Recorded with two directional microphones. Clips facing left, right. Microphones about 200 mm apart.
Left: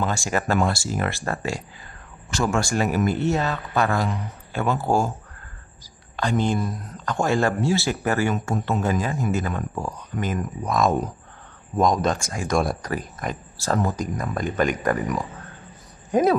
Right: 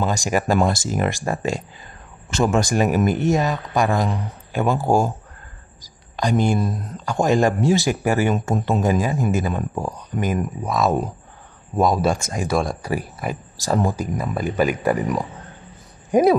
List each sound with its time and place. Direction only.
0.0 s speech: 15° right (ahead or behind)
6.1 s speech: 15° right (ahead or behind)
12.2 s speech: 20° right (ahead or behind)
12.8 s speech: 10° right (ahead or behind)
16.1 s speech: 10° right (ahead or behind)